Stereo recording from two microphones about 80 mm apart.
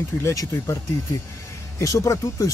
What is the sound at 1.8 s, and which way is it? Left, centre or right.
Speech, left.